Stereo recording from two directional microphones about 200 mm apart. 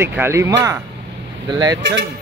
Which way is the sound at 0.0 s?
10° right (ahead or behind).